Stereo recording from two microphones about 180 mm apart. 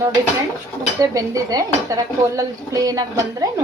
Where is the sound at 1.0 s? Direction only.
20° right (ahead or behind).